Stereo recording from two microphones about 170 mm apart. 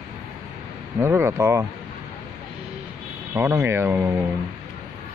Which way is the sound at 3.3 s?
15° right (ahead or behind).